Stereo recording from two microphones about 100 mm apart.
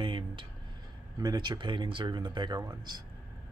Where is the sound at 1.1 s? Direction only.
45° right (ahead or behind).